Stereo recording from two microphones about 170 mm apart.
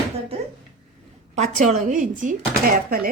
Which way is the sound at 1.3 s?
45° right (ahead or behind).